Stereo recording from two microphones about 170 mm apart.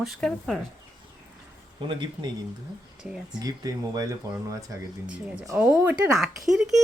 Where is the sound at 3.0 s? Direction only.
5° right (ahead or behind).